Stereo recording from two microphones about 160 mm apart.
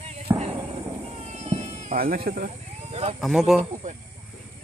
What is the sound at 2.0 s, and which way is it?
Speech, 65° right (ahead or behind).